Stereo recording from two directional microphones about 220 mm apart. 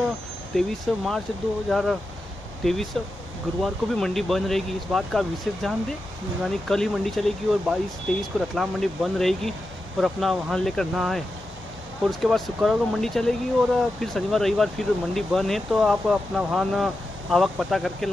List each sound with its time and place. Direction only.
0.6 s speech: centre (ahead or behind)